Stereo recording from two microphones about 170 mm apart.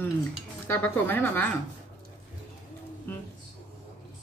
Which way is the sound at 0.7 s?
10° left (ahead or behind).